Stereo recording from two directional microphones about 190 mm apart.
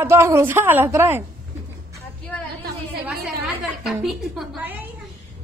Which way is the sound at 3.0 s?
5° right (ahead or behind).